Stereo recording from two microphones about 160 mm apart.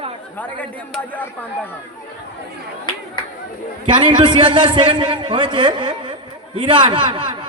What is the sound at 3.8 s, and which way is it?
A man's voice, 30° right (ahead or behind).